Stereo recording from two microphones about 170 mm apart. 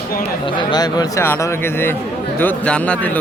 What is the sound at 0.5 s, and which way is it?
A man's voice, 25° left (ahead or behind).